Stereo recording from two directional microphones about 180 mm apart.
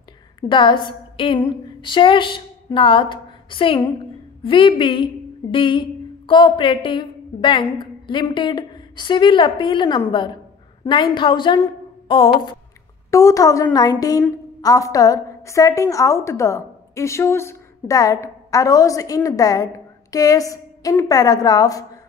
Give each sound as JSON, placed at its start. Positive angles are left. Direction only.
{"t": 0.4, "sound": "a woman's voice", "side_deg": 25}
{"t": 13.1, "sound": "a woman's voice", "side_deg": 15}